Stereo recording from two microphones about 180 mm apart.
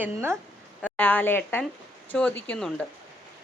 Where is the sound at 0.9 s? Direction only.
10° left (ahead or behind).